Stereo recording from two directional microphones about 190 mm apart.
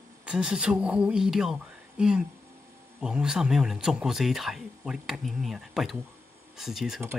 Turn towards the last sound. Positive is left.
turn(degrees=0)  # may be behind; listen again after turning